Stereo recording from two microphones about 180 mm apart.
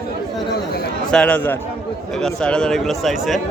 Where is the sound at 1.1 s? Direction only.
5° left (ahead or behind).